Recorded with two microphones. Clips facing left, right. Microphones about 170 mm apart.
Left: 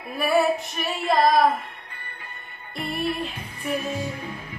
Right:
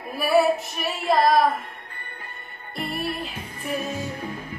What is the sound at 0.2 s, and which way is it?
Female singing, centre (ahead or behind).